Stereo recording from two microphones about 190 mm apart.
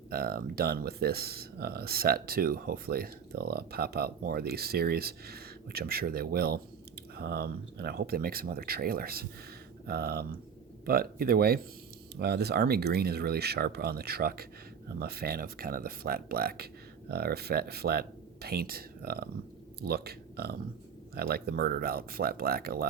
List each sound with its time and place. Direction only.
0.1 s speech: 50° right (ahead or behind)